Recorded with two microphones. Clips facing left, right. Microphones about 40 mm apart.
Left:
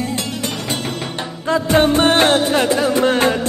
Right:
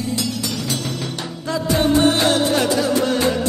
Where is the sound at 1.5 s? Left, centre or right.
Left.